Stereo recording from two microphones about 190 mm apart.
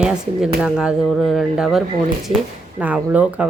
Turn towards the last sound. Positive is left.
turn(degrees=-5)  # may be behind; listen again after turning